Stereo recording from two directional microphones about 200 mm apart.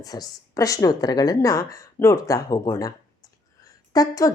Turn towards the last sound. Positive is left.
turn(degrees=15)  # may be behind; listen again after turning